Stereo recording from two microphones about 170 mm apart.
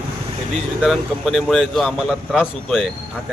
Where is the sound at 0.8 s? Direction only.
Centre (ahead or behind).